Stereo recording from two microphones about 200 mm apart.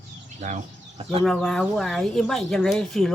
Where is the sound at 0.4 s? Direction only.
35° right (ahead or behind).